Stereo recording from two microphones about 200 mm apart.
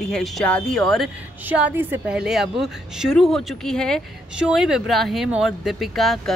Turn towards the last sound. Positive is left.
turn(degrees=0)  # may be behind; listen again after turning